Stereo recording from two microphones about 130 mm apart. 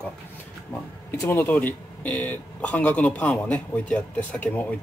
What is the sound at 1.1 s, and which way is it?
Speech, 15° left (ahead or behind).